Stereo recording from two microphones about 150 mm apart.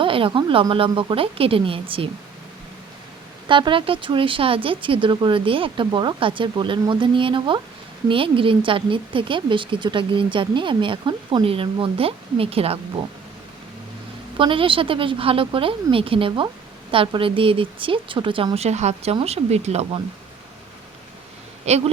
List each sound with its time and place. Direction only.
0.0 s speech: 35° right (ahead or behind)
3.5 s speech: 35° right (ahead or behind)
14.3 s speech: 35° right (ahead or behind)
21.6 s speech: 45° right (ahead or behind)